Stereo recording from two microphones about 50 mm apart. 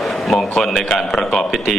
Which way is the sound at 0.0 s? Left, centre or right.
Centre.